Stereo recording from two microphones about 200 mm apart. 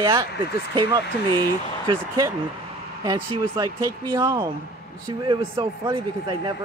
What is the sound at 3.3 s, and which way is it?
Speech, 25° right (ahead or behind).